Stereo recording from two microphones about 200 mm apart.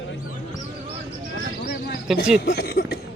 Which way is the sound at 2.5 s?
50° left (ahead or behind).